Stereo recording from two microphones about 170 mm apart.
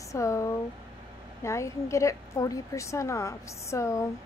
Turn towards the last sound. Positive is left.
turn(degrees=20)  # may be behind; listen again after turning